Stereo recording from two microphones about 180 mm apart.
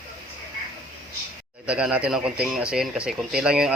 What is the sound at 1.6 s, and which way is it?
Speech, 5° right (ahead or behind).